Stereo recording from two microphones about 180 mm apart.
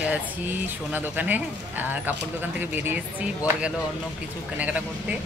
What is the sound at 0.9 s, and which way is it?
Speech, 10° right (ahead or behind).